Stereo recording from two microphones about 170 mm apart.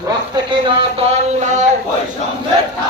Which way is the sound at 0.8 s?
40° right (ahead or behind).